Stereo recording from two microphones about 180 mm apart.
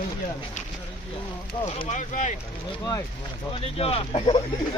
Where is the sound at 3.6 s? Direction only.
35° left (ahead or behind).